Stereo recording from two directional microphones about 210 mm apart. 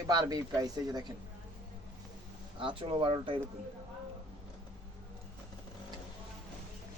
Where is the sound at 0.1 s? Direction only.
20° right (ahead or behind).